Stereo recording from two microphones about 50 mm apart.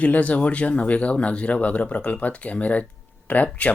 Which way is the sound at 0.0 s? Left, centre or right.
Left.